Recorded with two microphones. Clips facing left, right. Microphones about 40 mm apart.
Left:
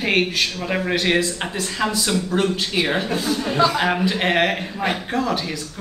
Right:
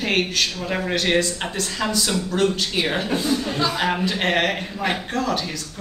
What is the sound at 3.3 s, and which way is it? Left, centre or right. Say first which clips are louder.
Speech: left 4 dB; left.